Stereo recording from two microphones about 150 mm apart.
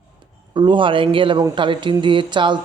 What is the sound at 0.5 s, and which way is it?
Speech, 30° right (ahead or behind).